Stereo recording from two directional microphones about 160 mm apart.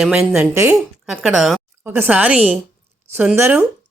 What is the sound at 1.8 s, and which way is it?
A woman's voice, 10° right (ahead or behind).